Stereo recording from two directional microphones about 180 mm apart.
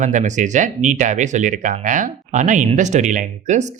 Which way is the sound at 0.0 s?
40° right (ahead or behind).